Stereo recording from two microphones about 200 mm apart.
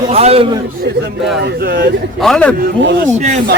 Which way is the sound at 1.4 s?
55° right (ahead or behind).